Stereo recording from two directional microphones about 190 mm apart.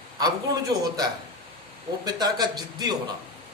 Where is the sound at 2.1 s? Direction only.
20° right (ahead or behind).